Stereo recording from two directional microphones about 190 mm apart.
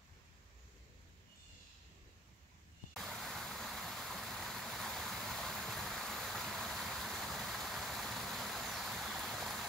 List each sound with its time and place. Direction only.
2.9 s waterfall: centre (ahead or behind)